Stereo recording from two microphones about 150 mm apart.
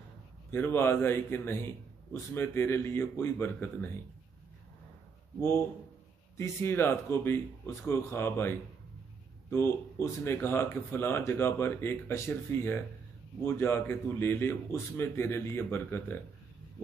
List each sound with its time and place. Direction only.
0.5 s speech: 15° left (ahead or behind)
6.3 s speech: 15° left (ahead or behind)